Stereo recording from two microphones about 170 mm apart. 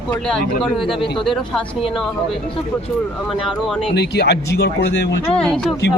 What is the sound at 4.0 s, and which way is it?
Speech, 75° left (ahead or behind).